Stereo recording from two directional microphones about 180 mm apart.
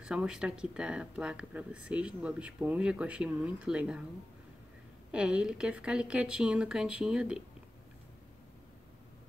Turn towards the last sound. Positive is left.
turn(degrees=-5)  # may be behind; listen again after turning